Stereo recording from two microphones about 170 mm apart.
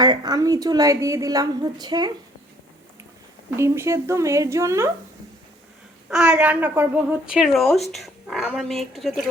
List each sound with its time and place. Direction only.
0.0 s a woman's voice: 25° right (ahead or behind)
3.5 s a woman's voice: 15° right (ahead or behind)
6.1 s a woman's voice: 5° right (ahead or behind)